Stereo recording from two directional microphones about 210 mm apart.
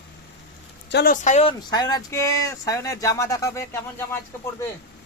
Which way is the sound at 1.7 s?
20° left (ahead or behind).